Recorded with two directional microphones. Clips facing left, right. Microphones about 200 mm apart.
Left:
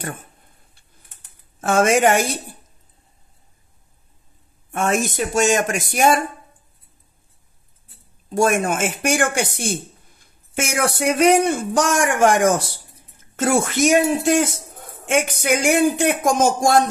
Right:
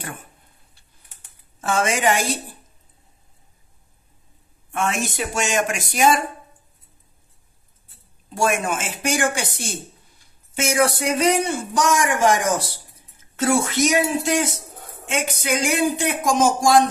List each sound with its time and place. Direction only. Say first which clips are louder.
1.6 s speech: left 5 dB; 50° left (ahead or behind)
4.7 s speech: left 4 dB; 45° left (ahead or behind)
8.4 s speech: left 4 dB; 50° left (ahead or behind)
13.4 s speech: left 1 dB; 50° left (ahead or behind)